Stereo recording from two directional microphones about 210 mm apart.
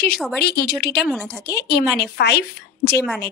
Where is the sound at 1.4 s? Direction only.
50° left (ahead or behind).